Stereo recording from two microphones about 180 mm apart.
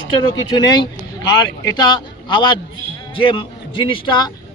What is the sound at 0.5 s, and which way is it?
A man's voice, 25° left (ahead or behind).